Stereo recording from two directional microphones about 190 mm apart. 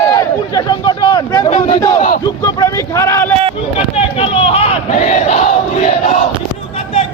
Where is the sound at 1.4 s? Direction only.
35° left (ahead or behind).